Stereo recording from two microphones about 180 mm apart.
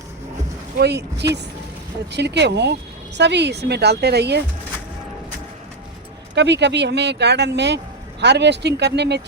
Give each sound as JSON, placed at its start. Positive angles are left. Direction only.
{"t": 0.8, "sound": "speech", "side_deg": -65}
{"t": 6.3, "sound": "speech", "side_deg": -75}